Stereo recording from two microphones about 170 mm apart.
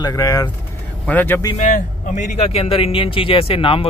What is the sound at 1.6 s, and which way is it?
Speech, 45° left (ahead or behind).